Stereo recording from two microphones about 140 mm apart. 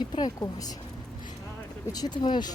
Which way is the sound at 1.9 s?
30° left (ahead or behind).